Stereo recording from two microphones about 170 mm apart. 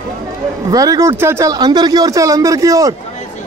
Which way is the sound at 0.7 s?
20° right (ahead or behind).